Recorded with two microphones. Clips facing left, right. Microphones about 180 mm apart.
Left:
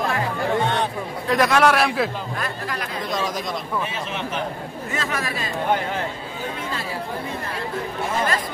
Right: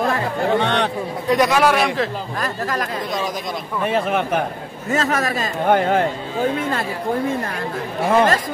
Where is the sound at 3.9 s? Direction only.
55° right (ahead or behind).